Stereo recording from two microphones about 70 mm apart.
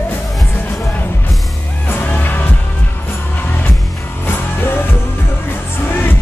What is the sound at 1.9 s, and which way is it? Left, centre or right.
Music, left.